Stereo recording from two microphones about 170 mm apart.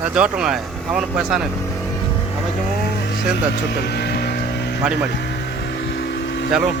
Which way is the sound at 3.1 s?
75° left (ahead or behind).